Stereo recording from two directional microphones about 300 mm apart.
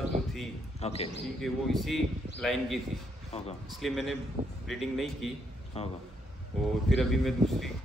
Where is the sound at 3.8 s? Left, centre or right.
Centre.